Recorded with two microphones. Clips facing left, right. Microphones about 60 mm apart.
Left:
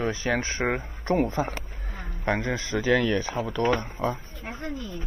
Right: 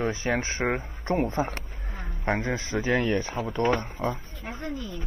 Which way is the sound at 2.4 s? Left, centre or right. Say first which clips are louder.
Left 1 dB; centre.